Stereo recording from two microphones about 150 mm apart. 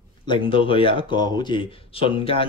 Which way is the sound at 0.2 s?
35° left (ahead or behind).